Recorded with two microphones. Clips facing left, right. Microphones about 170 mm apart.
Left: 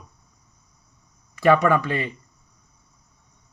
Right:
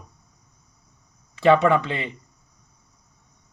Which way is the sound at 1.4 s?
25° right (ahead or behind).